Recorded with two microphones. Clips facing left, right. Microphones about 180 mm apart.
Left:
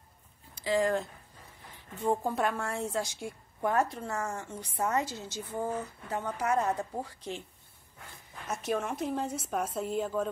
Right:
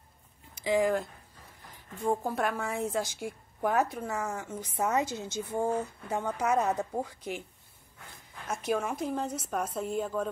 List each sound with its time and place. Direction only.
0.7 s a woman's voice: 10° right (ahead or behind)
2.0 s a woman's voice: centre (ahead or behind); by 6.6 s 20° right (ahead or behind)
6.6 s a woman's voice: 5° right (ahead or behind)
8.5 s a woman's voice: centre (ahead or behind)